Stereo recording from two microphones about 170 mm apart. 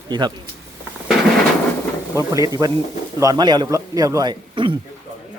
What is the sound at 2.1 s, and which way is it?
Speech, 20° right (ahead or behind).